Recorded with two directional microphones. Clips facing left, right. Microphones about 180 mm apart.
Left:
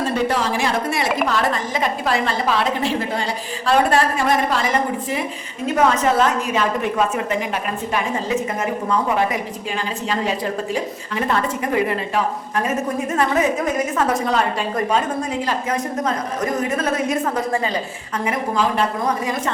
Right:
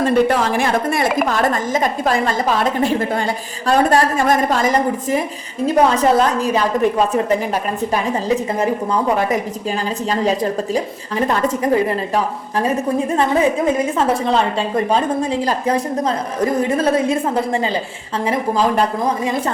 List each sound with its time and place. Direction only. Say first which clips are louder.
0.0 s a woman's voice: right 5 dB; 55° right (ahead or behind); by 7.6 s 35° right (ahead or behind)
10.1 s a woman's voice: right 5 dB; 40° right (ahead or behind)